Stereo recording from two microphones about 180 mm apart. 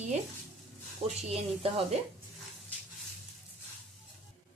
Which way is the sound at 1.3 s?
35° right (ahead or behind).